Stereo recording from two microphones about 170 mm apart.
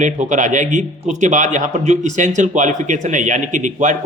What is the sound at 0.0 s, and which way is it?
A man's voice, 45° right (ahead or behind).